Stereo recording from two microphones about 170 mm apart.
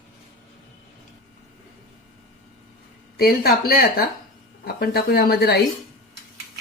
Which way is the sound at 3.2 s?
65° left (ahead or behind).